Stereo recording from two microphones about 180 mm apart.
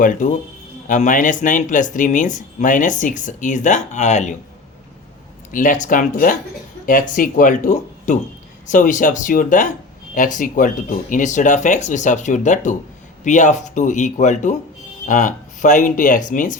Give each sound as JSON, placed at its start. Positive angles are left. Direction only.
{"t": 0.0, "sound": "speech", "side_deg": 45}
{"t": 5.5, "sound": "speech", "side_deg": 50}